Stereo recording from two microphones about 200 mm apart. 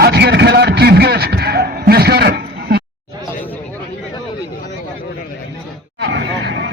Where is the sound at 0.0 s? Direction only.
55° right (ahead or behind).